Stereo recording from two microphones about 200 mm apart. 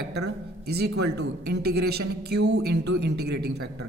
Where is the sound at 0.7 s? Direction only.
55° right (ahead or behind).